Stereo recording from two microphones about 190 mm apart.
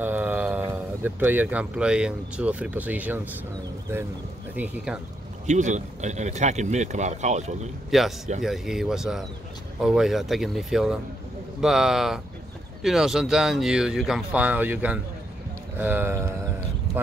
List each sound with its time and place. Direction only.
0.0 s speech: 10° right (ahead or behind)
5.5 s speech: 40° right (ahead or behind)
7.9 s speech: centre (ahead or behind)